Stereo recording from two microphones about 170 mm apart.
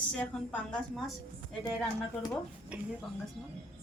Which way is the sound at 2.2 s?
Centre (ahead or behind).